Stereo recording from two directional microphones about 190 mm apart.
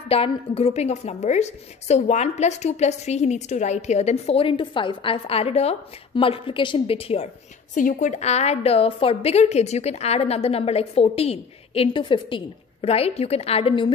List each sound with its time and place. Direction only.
0.1 s a woman's voice: 30° left (ahead or behind)
7.7 s a woman's voice: 40° left (ahead or behind)